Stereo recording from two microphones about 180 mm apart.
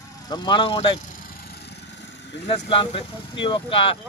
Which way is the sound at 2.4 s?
30° left (ahead or behind).